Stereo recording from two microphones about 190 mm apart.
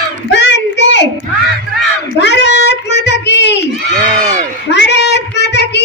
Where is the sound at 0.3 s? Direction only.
65° left (ahead or behind).